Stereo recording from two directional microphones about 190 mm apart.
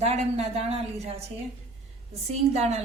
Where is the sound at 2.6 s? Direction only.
35° right (ahead or behind).